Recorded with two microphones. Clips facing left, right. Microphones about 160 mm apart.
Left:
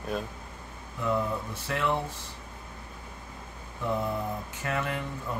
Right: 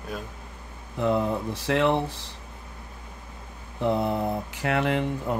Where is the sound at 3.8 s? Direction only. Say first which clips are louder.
Right 6 dB; 75° right (ahead or behind).